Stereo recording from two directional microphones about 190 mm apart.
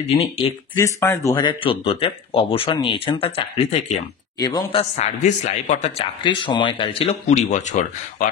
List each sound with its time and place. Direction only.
0.0 s speech: 30° left (ahead or behind)
0.7 s speech: 15° left (ahead or behind); by 3.8 s 30° left (ahead or behind)
4.4 s speech: 20° left (ahead or behind)
4.9 s speech: 40° left (ahead or behind)